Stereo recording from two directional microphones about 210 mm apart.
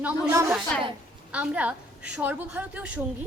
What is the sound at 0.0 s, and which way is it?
A woman's voice, 10° right (ahead or behind).